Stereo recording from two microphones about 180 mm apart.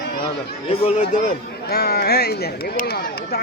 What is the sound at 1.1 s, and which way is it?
Speech, 55° left (ahead or behind).